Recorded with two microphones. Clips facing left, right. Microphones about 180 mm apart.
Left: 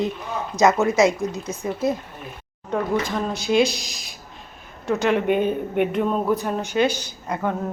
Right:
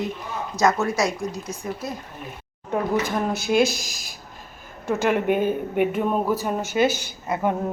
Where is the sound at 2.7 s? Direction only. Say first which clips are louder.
Even; 5° right (ahead or behind).